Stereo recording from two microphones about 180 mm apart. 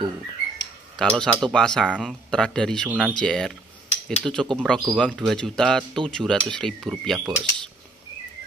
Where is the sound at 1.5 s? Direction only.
5° left (ahead or behind).